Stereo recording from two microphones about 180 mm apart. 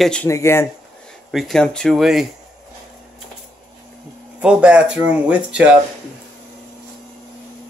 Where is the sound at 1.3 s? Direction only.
Centre (ahead or behind).